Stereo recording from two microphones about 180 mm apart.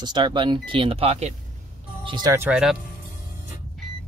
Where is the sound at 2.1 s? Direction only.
20° right (ahead or behind).